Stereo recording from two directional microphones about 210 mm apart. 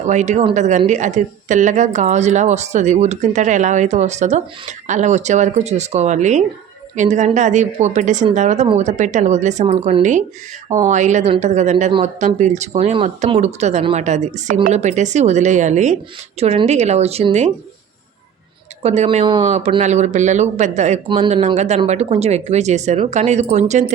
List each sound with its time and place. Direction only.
0.0 s a woman's voice: 35° right (ahead or behind)
18.8 s a woman's voice: 30° right (ahead or behind)